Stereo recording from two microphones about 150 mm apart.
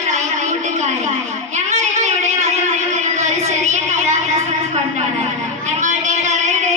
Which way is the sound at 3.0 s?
50° right (ahead or behind).